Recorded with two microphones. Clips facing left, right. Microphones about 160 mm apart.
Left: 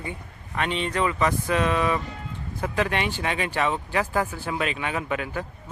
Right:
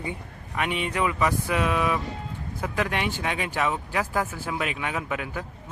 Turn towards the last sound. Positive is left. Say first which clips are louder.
# left 2 dB
turn(degrees=-5)  # may be behind; listen again after turning